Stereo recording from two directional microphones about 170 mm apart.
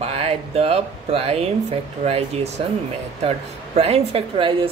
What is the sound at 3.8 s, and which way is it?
Speech, 35° right (ahead or behind).